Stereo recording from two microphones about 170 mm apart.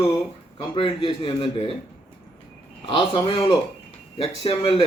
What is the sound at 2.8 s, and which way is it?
A man's voice, 30° left (ahead or behind).